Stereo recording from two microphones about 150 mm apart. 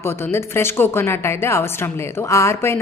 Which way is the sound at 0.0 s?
15° left (ahead or behind).